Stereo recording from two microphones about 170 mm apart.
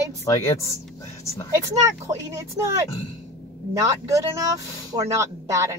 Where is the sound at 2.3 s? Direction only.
15° right (ahead or behind).